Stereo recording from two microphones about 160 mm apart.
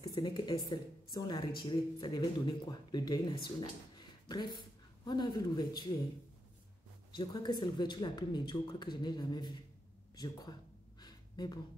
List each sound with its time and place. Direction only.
0.0 s speech: 25° left (ahead or behind)
7.2 s speech: 25° left (ahead or behind)
11.0 s a sound: 25° left (ahead or behind)